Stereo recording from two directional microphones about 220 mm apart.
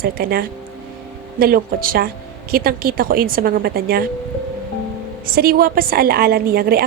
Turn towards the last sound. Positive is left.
turn(degrees=-45)  # may be behind; listen again after turning